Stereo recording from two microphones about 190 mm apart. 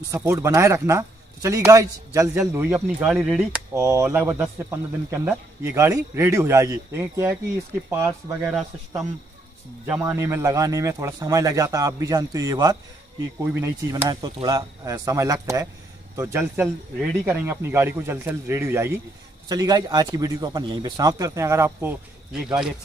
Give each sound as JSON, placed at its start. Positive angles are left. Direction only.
{"t": 0.1, "sound": "speech", "side_deg": -15}
{"t": 3.7, "sound": "speech", "side_deg": -15}
{"t": 9.8, "sound": "speech", "side_deg": -5}